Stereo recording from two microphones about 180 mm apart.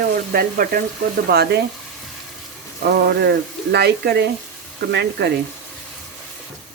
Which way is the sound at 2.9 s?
70° right (ahead or behind).